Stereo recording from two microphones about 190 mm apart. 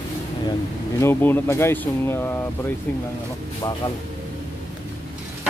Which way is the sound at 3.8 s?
20° left (ahead or behind).